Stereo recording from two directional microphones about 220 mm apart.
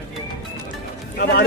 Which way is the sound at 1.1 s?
45° left (ahead or behind).